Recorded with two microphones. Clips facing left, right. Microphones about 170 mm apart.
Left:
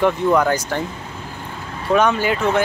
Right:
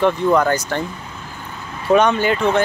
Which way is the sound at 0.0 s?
5° left (ahead or behind).